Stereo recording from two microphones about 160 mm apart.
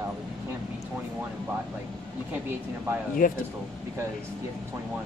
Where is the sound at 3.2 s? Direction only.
60° left (ahead or behind).